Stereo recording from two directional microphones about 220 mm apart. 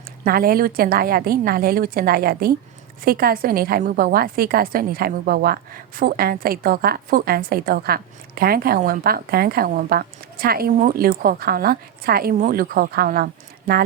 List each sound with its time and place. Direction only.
0.3 s a woman's voice: 40° right (ahead or behind)